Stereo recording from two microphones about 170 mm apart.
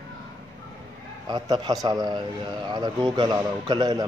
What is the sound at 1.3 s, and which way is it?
A man's voice, 25° right (ahead or behind).